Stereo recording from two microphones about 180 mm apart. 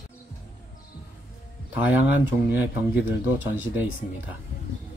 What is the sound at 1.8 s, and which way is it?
Speech, 10° right (ahead or behind).